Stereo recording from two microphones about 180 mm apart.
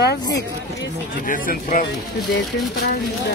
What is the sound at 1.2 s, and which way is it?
Speech, 50° left (ahead or behind).